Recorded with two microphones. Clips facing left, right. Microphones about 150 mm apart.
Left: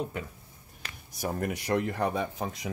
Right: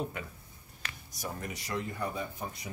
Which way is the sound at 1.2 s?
60° left (ahead or behind).